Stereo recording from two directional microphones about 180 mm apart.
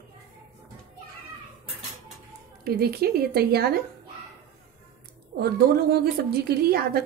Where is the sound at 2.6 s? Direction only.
60° right (ahead or behind).